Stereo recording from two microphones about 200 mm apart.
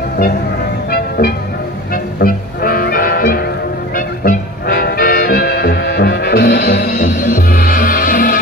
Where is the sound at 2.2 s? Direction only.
45° left (ahead or behind).